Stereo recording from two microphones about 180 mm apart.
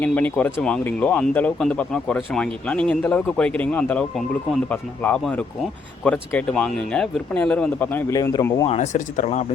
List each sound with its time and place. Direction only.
0.0 s speech: 10° left (ahead or behind)
8.6 s speech: 35° left (ahead or behind)